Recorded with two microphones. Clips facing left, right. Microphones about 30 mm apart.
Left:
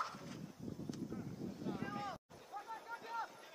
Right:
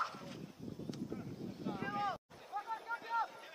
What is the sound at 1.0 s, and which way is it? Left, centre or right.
Boat, centre.